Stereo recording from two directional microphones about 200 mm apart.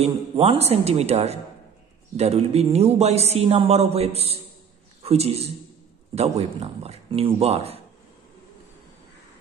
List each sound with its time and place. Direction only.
0.0 s a man's voice: 30° right (ahead or behind)